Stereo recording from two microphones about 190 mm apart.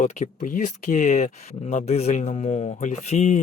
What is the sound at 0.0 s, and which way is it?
A man's voice, 40° left (ahead or behind).